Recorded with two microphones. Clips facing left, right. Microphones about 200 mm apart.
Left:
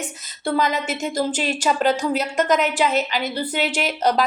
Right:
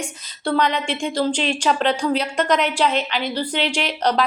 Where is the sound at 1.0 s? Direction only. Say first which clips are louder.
Right 3 dB; 5° left (ahead or behind).